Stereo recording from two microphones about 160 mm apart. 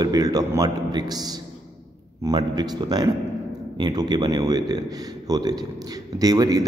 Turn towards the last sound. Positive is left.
turn(degrees=-25)  # may be behind; listen again after turning